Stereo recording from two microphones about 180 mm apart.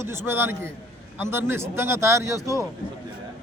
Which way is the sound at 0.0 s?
15° right (ahead or behind).